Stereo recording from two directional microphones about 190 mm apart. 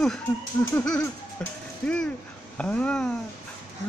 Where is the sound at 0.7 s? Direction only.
5° left (ahead or behind).